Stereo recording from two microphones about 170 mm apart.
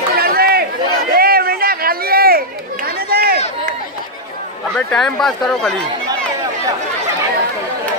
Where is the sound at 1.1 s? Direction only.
60° right (ahead or behind).